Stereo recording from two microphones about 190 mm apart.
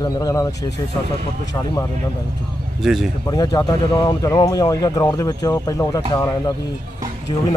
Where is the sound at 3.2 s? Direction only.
20° left (ahead or behind).